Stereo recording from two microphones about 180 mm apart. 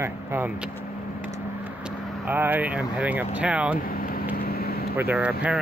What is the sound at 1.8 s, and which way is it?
Speech, 10° right (ahead or behind).